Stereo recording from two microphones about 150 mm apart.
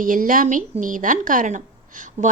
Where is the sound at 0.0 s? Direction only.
65° right (ahead or behind).